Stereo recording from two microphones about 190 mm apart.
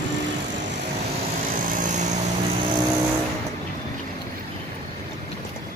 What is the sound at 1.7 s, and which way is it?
Vehicle, 40° right (ahead or behind).